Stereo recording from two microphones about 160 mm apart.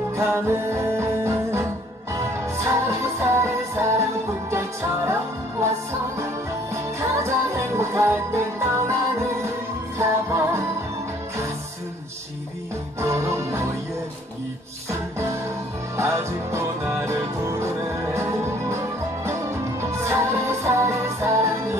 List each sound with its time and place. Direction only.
0.2 s music: 15° right (ahead or behind)
6.7 s music: 15° right (ahead or behind)
9.9 s music: 15° right (ahead or behind)
13.0 s music: 15° right (ahead or behind)
14.9 s music: 15° right (ahead or behind)
19.8 s music: 15° right (ahead or behind)